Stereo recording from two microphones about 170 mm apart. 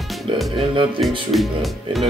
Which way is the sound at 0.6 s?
30° right (ahead or behind).